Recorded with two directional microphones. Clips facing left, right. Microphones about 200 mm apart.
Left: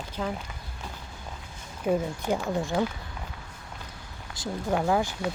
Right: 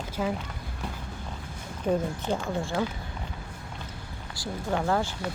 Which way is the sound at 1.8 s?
10° left (ahead or behind).